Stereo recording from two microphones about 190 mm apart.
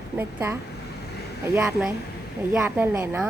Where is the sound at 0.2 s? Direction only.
15° right (ahead or behind).